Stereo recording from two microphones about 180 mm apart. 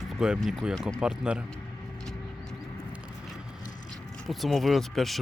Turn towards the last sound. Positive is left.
turn(degrees=0)  # may be behind; listen again after turning